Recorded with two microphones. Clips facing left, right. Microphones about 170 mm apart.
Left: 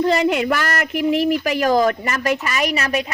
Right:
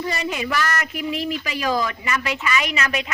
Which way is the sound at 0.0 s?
65° left (ahead or behind).